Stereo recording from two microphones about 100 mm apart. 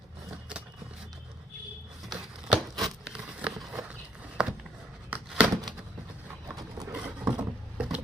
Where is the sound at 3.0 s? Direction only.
10° right (ahead or behind).